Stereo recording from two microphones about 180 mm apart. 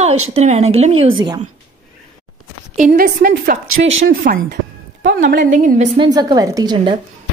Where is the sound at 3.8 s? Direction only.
90° right.